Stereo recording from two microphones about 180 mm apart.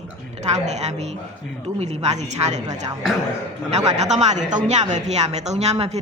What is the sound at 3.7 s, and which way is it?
Speech, 40° right (ahead or behind).